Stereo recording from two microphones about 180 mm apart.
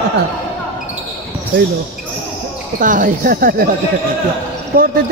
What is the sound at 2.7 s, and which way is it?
Speech, 45° right (ahead or behind).